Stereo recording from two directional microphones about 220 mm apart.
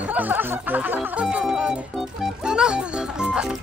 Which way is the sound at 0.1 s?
10° right (ahead or behind).